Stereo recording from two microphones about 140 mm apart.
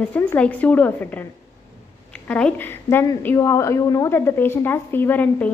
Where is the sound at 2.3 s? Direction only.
10° left (ahead or behind).